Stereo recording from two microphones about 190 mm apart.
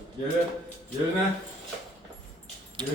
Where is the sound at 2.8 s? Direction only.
25° right (ahead or behind).